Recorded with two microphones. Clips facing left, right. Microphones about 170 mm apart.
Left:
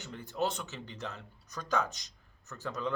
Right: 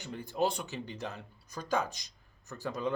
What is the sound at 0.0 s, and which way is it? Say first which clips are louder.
Speech: right 2 dB; 15° right (ahead or behind).